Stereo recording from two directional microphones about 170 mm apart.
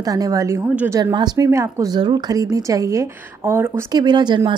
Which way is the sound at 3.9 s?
25° right (ahead or behind).